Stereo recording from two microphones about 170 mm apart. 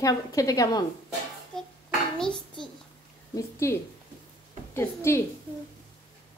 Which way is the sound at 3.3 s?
15° left (ahead or behind).